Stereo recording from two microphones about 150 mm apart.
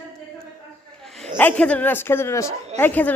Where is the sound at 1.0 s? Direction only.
Centre (ahead or behind).